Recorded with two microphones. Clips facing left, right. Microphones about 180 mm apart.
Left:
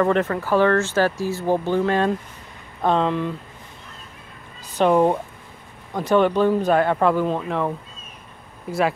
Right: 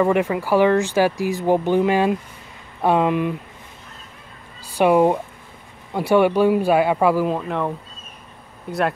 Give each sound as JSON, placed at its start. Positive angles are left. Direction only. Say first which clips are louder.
{"t": 0.0, "sound": "speech", "louder": "right 1 dB", "side_deg": -10}
{"t": 4.6, "sound": "speech", "louder": "right 2 dB", "side_deg": -10}